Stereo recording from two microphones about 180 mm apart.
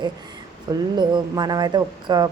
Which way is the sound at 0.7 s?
25° right (ahead or behind).